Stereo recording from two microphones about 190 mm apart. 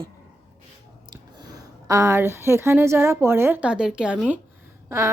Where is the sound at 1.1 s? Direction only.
20° right (ahead or behind).